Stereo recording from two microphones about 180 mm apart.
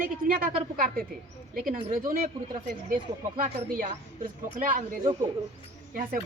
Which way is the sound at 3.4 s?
50° right (ahead or behind).